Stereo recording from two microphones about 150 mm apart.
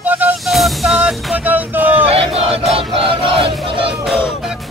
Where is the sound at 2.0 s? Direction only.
40° right (ahead or behind).